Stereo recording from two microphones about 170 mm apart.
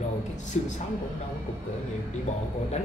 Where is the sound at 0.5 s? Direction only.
45° left (ahead or behind).